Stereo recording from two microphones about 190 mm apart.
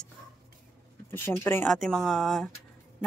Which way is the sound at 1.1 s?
10° left (ahead or behind).